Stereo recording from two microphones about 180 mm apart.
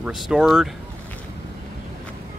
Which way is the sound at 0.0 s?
Centre (ahead or behind).